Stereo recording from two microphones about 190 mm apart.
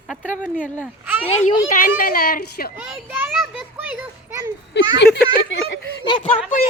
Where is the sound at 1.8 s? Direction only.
50° left (ahead or behind).